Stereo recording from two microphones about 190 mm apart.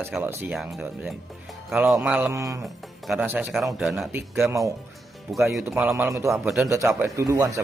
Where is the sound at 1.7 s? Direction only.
Centre (ahead or behind).